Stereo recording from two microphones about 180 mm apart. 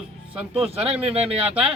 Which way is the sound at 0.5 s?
30° right (ahead or behind).